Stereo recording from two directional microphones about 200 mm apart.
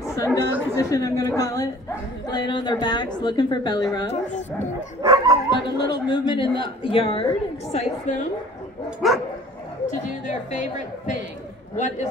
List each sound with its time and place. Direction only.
0.0 s chatter: 15° left (ahead or behind)
0.7 s a woman's voice: 15° left (ahead or behind)
4.1 s speech: 35° left (ahead or behind)
5.0 s speech: 20° right (ahead or behind)
5.5 s a woman's voice: 25° left (ahead or behind)
9.0 s speech: centre (ahead or behind)
9.8 s speech: 40° left (ahead or behind)